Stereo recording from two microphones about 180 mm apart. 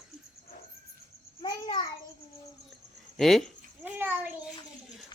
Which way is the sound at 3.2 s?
Centre (ahead or behind).